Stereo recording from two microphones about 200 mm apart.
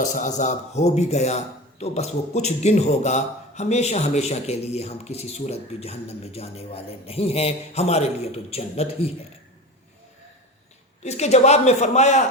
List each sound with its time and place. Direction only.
0.0 s a man's voice: 40° left (ahead or behind)
11.0 s a man's voice: 35° left (ahead or behind)